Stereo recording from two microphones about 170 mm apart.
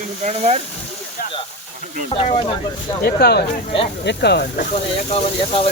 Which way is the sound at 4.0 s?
80° left.